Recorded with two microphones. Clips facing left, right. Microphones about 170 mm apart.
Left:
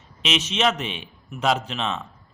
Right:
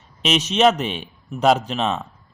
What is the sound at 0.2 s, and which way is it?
A man's voice, 40° right (ahead or behind).